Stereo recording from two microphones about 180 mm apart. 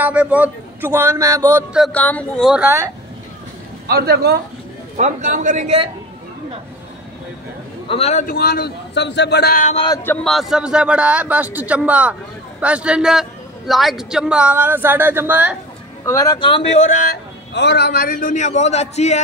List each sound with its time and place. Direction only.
0.0 s a man's voice: 5° right (ahead or behind)
1.9 s speech: 10° left (ahead or behind)
3.8 s speech: 65° right (ahead or behind)
4.9 s a man's voice: 45° right (ahead or behind)
7.9 s a man's voice: 35° left (ahead or behind)
10.0 s a man's voice: centre (ahead or behind)
16.1 s speech: 20° left (ahead or behind)
17.6 s a man's voice: 70° left (ahead or behind); by 19.2 s 40° left (ahead or behind)